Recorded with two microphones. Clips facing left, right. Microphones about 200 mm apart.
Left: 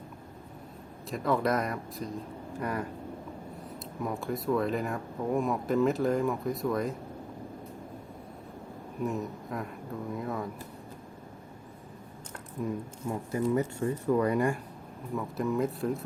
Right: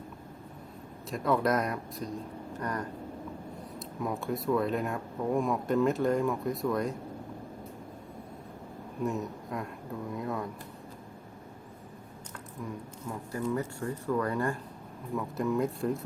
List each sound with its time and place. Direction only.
1.1 s speech: centre (ahead or behind)
9.0 s speech: centre (ahead or behind)
12.6 s speech: 20° left (ahead or behind)
15.1 s speech: centre (ahead or behind)